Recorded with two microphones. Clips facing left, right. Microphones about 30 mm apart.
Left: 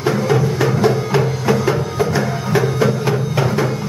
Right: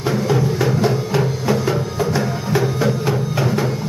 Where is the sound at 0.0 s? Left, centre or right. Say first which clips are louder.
Left 2 dB; centre.